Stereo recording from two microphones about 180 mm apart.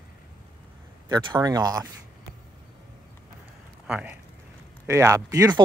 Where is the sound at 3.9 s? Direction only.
5° right (ahead or behind).